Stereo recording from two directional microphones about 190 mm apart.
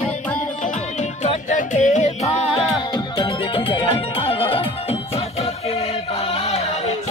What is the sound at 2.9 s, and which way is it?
Music, 25° left (ahead or behind).